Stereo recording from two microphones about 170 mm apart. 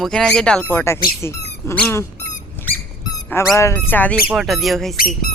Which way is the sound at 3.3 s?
15° left (ahead or behind).